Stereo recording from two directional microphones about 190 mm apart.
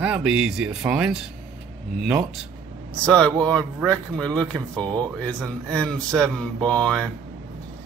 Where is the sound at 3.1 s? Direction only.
5° left (ahead or behind).